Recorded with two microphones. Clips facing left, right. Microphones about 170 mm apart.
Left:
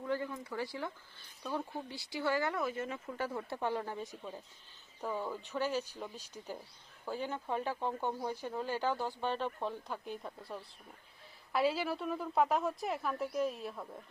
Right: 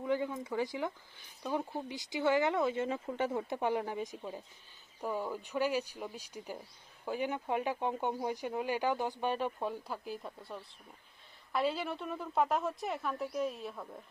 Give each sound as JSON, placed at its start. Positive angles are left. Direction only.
{"t": 0.0, "sound": "speech", "side_deg": -15}